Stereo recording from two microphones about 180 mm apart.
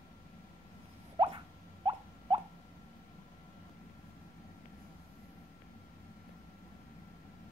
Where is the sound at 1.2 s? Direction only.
25° right (ahead or behind).